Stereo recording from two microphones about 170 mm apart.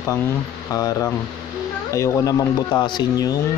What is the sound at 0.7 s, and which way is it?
Speech, 20° left (ahead or behind).